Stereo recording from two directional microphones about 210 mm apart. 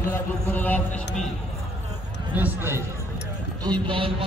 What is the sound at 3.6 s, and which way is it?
Speech, 20° right (ahead or behind).